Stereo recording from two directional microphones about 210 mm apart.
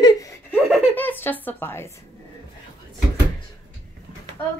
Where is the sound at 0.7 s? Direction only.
10° left (ahead or behind).